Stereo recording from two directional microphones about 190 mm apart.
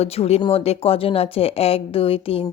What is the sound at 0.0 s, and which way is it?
Speech, 35° left (ahead or behind).